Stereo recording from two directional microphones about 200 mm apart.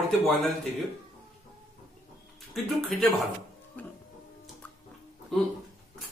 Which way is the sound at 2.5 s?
Centre (ahead or behind).